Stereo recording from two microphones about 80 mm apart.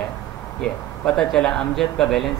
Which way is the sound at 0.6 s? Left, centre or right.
Centre.